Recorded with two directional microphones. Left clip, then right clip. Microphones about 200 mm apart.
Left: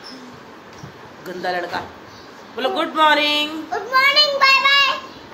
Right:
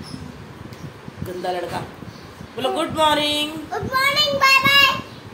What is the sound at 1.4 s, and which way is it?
Speech, 10° right (ahead or behind).